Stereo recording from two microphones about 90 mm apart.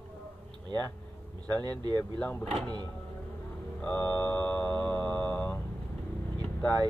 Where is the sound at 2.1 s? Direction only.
15° left (ahead or behind).